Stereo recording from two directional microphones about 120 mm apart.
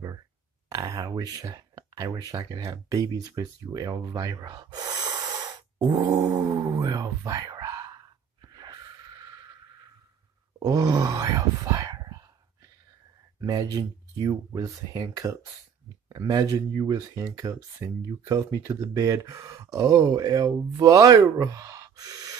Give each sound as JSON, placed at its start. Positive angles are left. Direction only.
{"t": 0.7, "sound": "speech", "side_deg": -35}
{"t": 8.4, "sound": "wheeze", "side_deg": -35}
{"t": 10.6, "sound": "speech", "side_deg": -30}
{"t": 13.4, "sound": "speech", "side_deg": -30}